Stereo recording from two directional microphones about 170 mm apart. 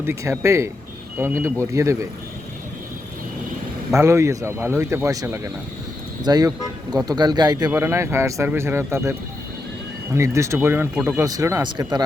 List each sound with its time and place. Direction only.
0.0 s speech: 15° right (ahead or behind)
3.9 s speech: 15° right (ahead or behind)
10.2 s speech: 15° right (ahead or behind)